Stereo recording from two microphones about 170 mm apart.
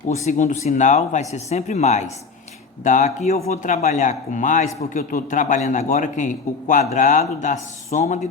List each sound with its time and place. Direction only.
0.3 s a man's voice: 45° left (ahead or behind)